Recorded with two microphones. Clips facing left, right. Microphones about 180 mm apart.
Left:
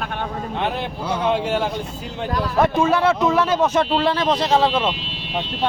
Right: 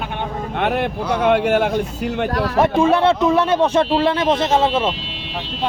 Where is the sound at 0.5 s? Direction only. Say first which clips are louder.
Right 6 dB; 60° right (ahead or behind).